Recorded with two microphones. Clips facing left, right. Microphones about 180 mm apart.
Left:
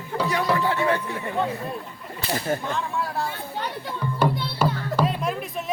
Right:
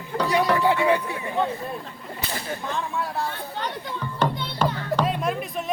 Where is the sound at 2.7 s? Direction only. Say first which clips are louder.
Left 1 dB; centre (ahead or behind).